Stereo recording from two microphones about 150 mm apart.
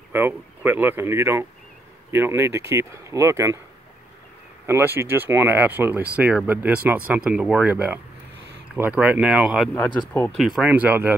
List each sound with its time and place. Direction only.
0.1 s speech: 15° right (ahead or behind)
4.6 s speech: 15° right (ahead or behind)
9.8 s speech: 10° left (ahead or behind)
10.3 s speech: centre (ahead or behind)